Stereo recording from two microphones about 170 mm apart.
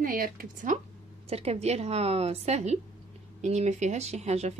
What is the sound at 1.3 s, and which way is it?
Speech, 35° right (ahead or behind).